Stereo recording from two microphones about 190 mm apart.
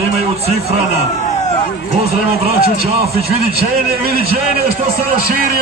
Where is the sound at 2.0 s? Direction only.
30° right (ahead or behind).